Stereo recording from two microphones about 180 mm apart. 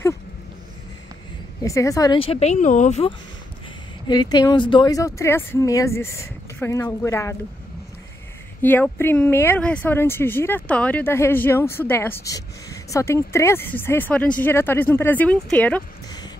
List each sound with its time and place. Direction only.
1.6 s speech: 20° left (ahead or behind)
2.1 s speech: 35° left (ahead or behind)
4.1 s speech: 20° left (ahead or behind)
8.6 s speech: 10° left (ahead or behind)